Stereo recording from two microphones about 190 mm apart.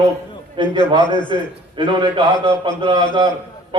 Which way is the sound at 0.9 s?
25° left (ahead or behind).